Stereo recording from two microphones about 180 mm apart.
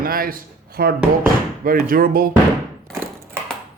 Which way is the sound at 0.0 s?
55° right (ahead or behind).